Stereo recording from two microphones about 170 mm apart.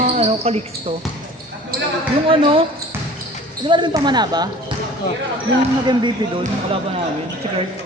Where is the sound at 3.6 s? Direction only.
25° right (ahead or behind).